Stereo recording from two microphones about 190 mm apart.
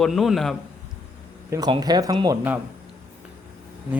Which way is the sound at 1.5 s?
20° right (ahead or behind).